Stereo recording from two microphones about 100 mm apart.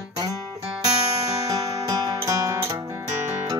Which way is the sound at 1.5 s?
35° right (ahead or behind).